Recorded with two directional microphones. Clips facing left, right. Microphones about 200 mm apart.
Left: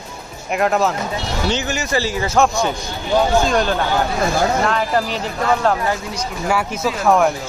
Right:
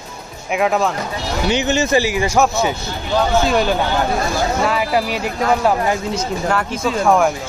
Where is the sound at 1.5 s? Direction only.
20° right (ahead or behind).